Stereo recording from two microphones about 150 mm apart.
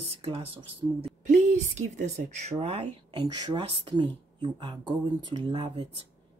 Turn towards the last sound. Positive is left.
turn(degrees=-35)  # may be behind; listen again after turning